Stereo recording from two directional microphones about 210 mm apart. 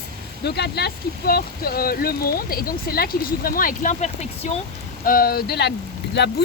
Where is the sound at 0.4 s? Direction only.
50° left (ahead or behind); by 4.5 s 30° left (ahead or behind).